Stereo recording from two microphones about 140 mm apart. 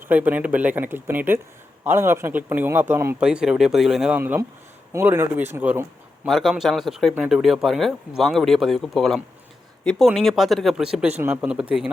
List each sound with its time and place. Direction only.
0.1 s a man's voice: 10° right (ahead or behind)
3.2 s speech: 5° right (ahead or behind)
4.2 s a man's voice: 15° right (ahead or behind)
6.2 s a man's voice: centre (ahead or behind)